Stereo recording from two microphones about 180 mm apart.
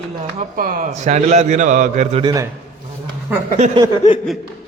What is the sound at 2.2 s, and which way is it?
Speech, 20° right (ahead or behind).